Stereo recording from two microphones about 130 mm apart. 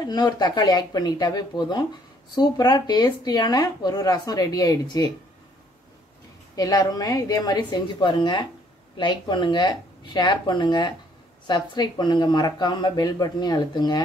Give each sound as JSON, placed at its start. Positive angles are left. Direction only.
{"t": 0.0, "sound": "speech", "side_deg": 30}
{"t": 6.5, "sound": "a woman's voice", "side_deg": 30}